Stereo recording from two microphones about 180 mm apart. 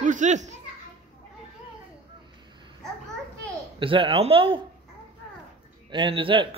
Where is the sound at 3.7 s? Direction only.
30° right (ahead or behind).